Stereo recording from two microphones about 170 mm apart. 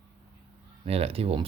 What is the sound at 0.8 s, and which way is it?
Speech, 35° right (ahead or behind).